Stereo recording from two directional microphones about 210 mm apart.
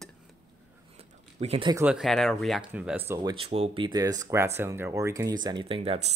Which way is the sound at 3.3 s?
30° right (ahead or behind).